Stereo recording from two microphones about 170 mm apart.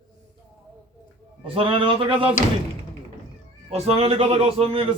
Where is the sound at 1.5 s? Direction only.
30° right (ahead or behind).